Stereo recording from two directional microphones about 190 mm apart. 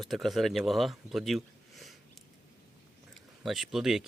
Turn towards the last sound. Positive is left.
turn(degrees=0)  # may be behind; listen again after turning